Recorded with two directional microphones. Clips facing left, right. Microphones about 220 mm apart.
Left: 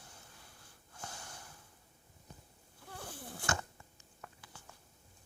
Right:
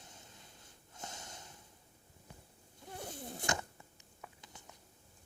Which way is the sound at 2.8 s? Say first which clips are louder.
Right 3 dB; 20° right (ahead or behind).